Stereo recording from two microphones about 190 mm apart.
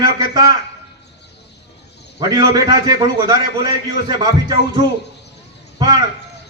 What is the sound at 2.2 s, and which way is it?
A man's voice, 20° right (ahead or behind).